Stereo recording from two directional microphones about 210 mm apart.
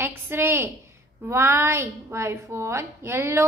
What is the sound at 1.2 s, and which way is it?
A woman's voice, 10° right (ahead or behind).